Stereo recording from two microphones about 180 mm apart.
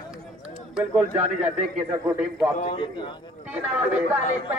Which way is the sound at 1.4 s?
40° right (ahead or behind).